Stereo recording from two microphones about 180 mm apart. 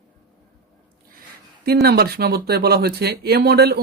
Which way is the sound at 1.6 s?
60° right (ahead or behind).